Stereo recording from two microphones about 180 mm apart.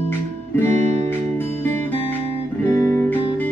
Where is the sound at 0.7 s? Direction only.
40° right (ahead or behind).